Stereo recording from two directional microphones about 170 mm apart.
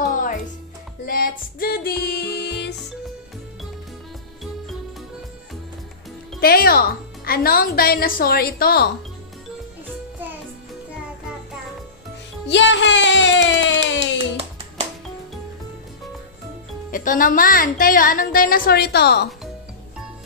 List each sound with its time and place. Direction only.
0.1 s music: 50° left (ahead or behind); by 2.7 s 80° left
6.4 s a woman's voice: 60° left (ahead or behind)
12.4 s speech: 90° left
14.1 s hands: 35° right (ahead or behind)
16.9 s a woman's voice: 55° left (ahead or behind); by 19.2 s 75° left (ahead or behind)